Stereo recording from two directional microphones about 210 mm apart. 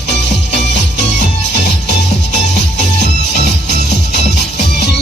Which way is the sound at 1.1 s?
55° left (ahead or behind).